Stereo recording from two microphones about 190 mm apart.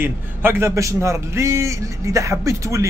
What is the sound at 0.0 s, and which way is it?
A man's voice, 10° right (ahead or behind).